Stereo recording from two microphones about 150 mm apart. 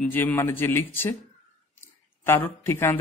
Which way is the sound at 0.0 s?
15° left (ahead or behind).